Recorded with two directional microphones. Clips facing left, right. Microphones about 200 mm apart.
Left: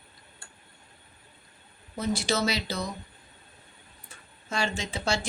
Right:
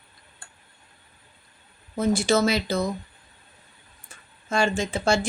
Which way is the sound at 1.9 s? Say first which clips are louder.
Right 7 dB; 50° right (ahead or behind).